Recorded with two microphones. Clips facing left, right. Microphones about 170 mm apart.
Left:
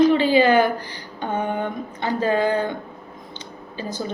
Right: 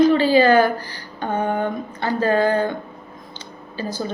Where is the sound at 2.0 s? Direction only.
15° left (ahead or behind).